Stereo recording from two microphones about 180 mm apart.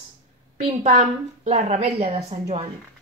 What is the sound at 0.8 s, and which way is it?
A woman's voice, 40° right (ahead or behind).